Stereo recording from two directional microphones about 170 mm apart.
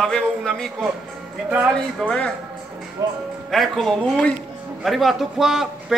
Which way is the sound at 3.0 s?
20° right (ahead or behind).